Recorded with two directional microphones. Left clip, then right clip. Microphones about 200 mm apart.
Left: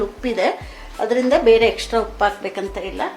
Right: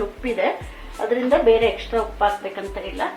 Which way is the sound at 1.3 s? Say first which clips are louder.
Left 2 dB; 50° left (ahead or behind).